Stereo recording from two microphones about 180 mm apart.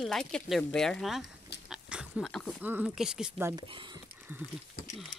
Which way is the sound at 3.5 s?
25° right (ahead or behind).